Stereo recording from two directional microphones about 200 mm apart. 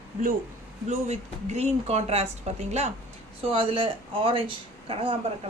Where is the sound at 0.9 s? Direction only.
35° right (ahead or behind).